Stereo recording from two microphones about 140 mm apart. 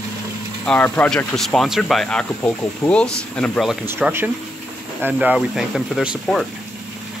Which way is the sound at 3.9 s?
15° right (ahead or behind).